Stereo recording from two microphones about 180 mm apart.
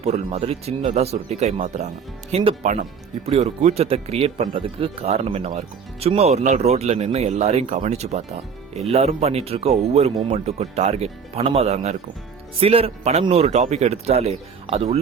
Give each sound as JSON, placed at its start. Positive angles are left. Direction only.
{"t": 0.0, "sound": "speech", "side_deg": -40}